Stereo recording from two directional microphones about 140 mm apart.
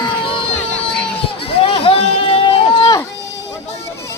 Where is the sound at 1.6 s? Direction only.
45° left (ahead or behind).